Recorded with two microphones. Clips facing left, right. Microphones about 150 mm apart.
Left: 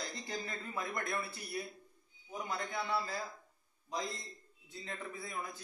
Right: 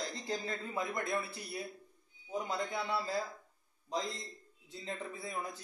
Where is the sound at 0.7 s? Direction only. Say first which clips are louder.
Right 2 dB; 20° right (ahead or behind).